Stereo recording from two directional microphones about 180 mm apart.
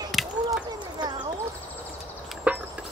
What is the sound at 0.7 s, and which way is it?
Clip-clop, 25° right (ahead or behind).